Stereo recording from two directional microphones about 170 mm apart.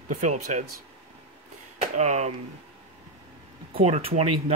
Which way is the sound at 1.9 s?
40° right (ahead or behind).